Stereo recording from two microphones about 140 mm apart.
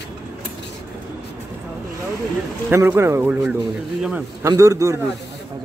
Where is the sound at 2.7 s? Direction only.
15° right (ahead or behind).